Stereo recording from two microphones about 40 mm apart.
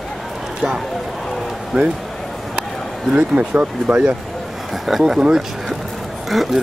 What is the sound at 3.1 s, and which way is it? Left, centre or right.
Speech, right.